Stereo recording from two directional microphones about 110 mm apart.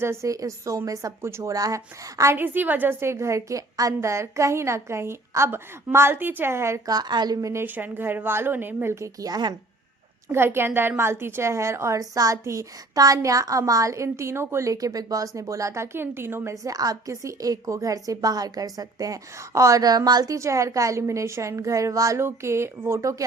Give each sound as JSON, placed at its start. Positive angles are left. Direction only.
{"t": 0.0, "sound": "a woman's voice", "side_deg": -25}
{"t": 7.6, "sound": "a woman's voice", "side_deg": -15}
{"t": 10.3, "sound": "a woman's voice", "side_deg": -20}